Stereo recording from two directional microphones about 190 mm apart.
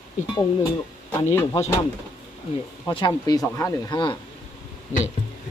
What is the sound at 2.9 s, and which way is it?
Speech, 25° left (ahead or behind).